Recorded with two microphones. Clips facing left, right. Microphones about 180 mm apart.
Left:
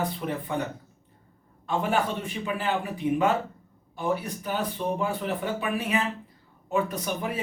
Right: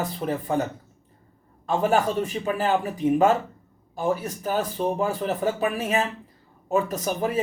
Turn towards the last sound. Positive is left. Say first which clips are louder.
# right 3 dB
turn(degrees=-40)  # may be behind; listen again after turning